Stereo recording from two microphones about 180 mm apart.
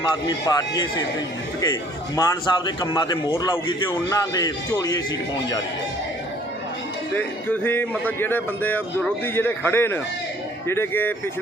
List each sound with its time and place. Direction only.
0.3 s a man's voice: 20° left (ahead or behind)
7.2 s a man's voice: 10° left (ahead or behind)